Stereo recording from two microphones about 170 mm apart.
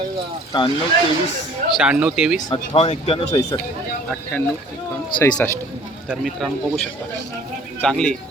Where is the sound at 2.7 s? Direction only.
35° left (ahead or behind).